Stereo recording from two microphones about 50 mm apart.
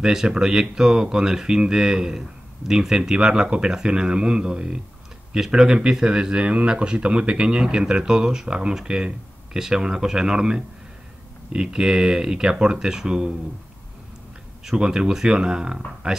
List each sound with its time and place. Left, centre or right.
0.0 s speech: centre
14.6 s speech: centre